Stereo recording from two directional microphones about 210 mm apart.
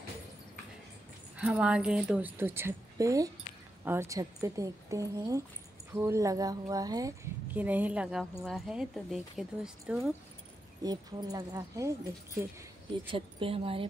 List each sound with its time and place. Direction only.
1.3 s a woman's voice: 5° right (ahead or behind)
10.8 s a woman's voice: 20° right (ahead or behind)
13.1 s speech: 25° right (ahead or behind)